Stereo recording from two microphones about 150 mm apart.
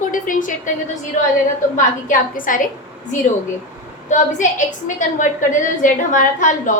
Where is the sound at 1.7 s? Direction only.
60° left (ahead or behind).